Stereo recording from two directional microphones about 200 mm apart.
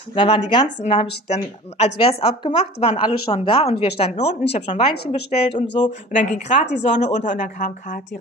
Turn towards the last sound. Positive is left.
turn(degrees=40)  # may be behind; listen again after turning